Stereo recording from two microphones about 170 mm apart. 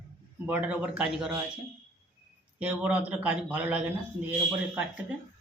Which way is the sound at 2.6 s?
10° right (ahead or behind).